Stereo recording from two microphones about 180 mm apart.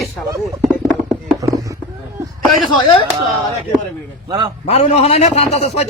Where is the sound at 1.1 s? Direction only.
15° right (ahead or behind).